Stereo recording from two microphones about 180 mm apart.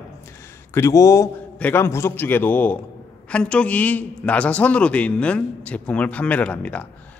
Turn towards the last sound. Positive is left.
turn(degrees=10)  # may be behind; listen again after turning